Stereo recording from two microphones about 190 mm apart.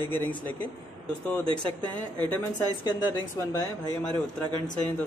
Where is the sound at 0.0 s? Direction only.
10° left (ahead or behind).